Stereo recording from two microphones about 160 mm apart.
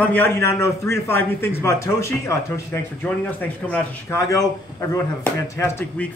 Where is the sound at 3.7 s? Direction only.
15° left (ahead or behind).